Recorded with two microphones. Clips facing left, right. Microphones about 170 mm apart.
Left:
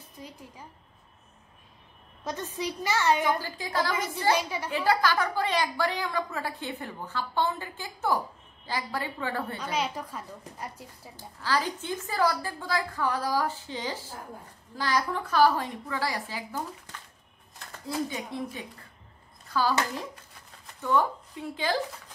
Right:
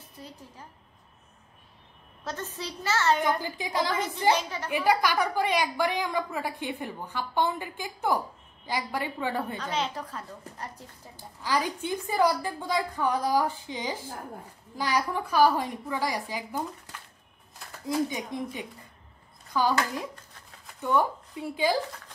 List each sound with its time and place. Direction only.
0.2 s a sound: 15° left (ahead or behind)
2.2 s a woman's voice: 15° left (ahead or behind)
3.3 s a woman's voice: 15° right (ahead or behind)
4.3 s a woman's voice: 10° left (ahead or behind)
4.6 s a woman's voice: 10° right (ahead or behind)
9.6 s a woman's voice: 10° left (ahead or behind)
11.4 s a woman's voice: 15° right (ahead or behind)